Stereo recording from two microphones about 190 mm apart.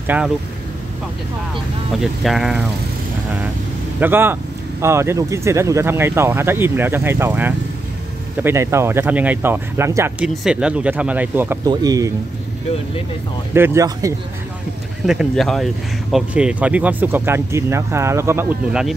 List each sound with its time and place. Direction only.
0.0 s speech: 10° right (ahead or behind)
2.2 s speech: centre (ahead or behind)
4.0 s speech: 10° right (ahead or behind)
10.2 s speech: 5° right (ahead or behind); by 12.1 s 20° right (ahead or behind)
13.5 s speech: 15° right (ahead or behind)
15.0 s speech: centre (ahead or behind)